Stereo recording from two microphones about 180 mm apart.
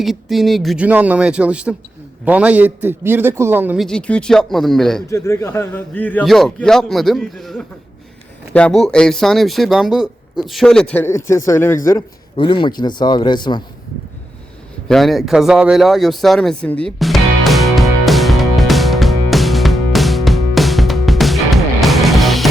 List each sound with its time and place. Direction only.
0.0 s speech: centre (ahead or behind)
3.8 s speech: 5° left (ahead or behind)
5.0 s a man's voice: 15° left (ahead or behind)
14.8 s a sound: centre (ahead or behind)